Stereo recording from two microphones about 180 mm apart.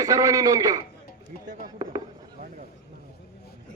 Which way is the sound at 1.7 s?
25° right (ahead or behind).